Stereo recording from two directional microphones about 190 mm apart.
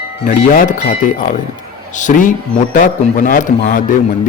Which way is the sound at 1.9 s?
40° left (ahead or behind).